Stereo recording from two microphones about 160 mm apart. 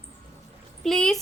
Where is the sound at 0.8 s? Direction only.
5° left (ahead or behind).